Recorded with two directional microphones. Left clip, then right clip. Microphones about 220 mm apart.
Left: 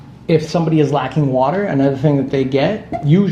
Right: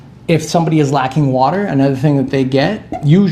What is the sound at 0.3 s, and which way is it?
Speech, 50° right (ahead or behind).